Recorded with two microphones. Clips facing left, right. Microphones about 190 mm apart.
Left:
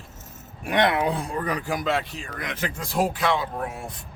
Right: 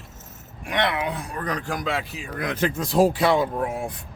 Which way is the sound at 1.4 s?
5° left (ahead or behind).